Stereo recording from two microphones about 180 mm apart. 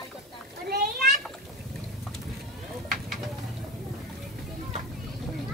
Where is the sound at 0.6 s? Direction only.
55° right (ahead or behind).